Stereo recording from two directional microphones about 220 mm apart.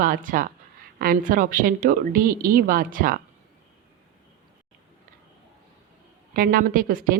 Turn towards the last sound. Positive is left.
turn(degrees=-40)  # may be behind; listen again after turning